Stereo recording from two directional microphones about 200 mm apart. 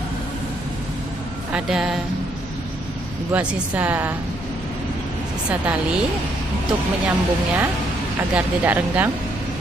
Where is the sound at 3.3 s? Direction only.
10° right (ahead or behind).